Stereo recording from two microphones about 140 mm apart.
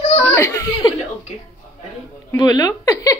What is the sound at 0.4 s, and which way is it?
Speech, 20° left (ahead or behind).